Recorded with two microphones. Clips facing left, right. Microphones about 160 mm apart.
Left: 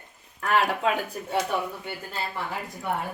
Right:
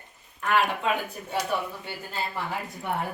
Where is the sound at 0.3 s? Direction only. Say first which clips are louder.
Left 1 dB; 35° left (ahead or behind).